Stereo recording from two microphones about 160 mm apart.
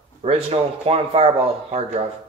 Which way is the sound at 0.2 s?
40° right (ahead or behind).